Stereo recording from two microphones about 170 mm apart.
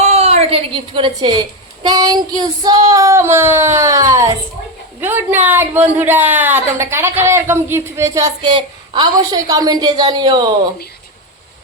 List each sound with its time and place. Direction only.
0.0 s a woman's voice: 40° right (ahead or behind)